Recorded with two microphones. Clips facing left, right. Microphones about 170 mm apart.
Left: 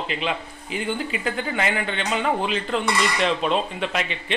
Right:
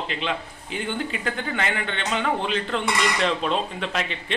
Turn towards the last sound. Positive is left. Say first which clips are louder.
# left 2 dB
turn(degrees=5)  # may be behind; listen again after turning